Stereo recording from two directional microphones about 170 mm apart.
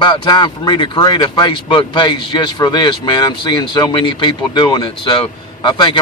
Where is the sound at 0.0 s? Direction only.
25° left (ahead or behind).